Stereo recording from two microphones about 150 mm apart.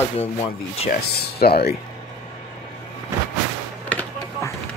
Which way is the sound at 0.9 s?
90° left.